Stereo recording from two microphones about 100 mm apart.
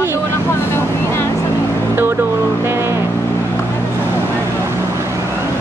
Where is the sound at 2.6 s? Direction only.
25° right (ahead or behind).